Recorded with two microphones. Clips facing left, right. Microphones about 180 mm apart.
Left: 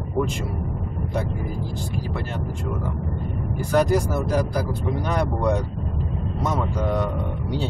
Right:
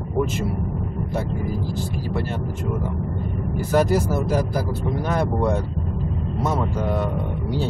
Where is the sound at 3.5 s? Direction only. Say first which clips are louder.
Right 1 dB; 15° left (ahead or behind).